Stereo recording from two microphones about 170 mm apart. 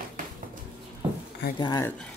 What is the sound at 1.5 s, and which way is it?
Speech, 25° left (ahead or behind).